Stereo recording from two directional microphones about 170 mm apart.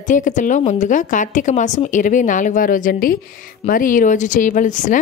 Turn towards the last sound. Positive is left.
turn(degrees=50)  # may be behind; listen again after turning